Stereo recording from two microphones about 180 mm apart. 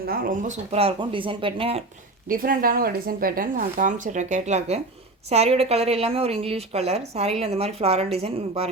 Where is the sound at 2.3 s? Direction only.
50° right (ahead or behind).